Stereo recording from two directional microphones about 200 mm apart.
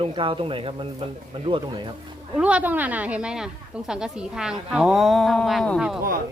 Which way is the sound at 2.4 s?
5° right (ahead or behind).